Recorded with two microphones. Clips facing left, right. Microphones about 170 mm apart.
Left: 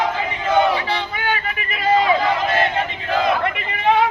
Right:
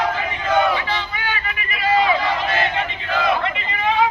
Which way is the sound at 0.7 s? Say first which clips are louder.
Left 1 dB; 35° left (ahead or behind).